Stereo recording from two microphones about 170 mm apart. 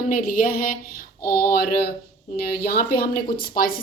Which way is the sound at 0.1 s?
55° left (ahead or behind).